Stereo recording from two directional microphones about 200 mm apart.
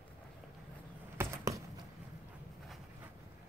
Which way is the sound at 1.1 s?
15° right (ahead or behind).